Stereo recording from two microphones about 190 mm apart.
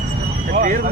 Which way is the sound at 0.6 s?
45° right (ahead or behind).